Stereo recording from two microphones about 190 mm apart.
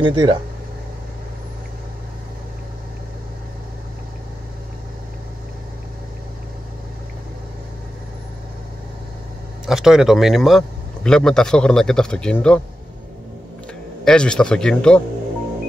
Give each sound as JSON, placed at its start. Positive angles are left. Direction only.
{"t": 0.0, "sound": "speech", "side_deg": -25}
{"t": 9.7, "sound": "a man's voice", "side_deg": 0}
{"t": 14.0, "sound": "a man's voice", "side_deg": 5}